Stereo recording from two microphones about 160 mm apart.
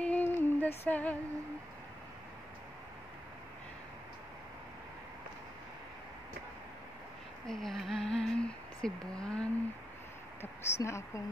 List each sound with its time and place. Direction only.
0.0 s a sound: 10° left (ahead or behind)
0.8 s speech: 10° left (ahead or behind)
7.4 s humming: centre (ahead or behind)
10.4 s speech: 15° left (ahead or behind)